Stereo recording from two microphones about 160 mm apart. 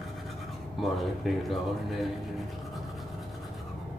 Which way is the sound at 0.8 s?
Centre (ahead or behind).